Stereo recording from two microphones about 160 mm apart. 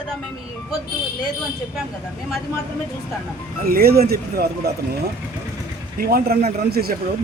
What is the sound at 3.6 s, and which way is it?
A man's voice, 70° right (ahead or behind).